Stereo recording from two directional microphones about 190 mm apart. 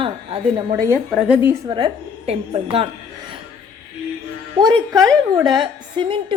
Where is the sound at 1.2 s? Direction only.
5° right (ahead or behind).